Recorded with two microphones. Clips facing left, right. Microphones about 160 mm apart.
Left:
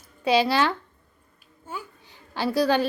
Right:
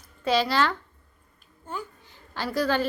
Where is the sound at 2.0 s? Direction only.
15° left (ahead or behind).